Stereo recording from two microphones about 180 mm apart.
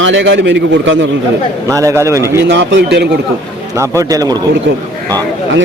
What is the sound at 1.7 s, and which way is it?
Speech, 15° right (ahead or behind).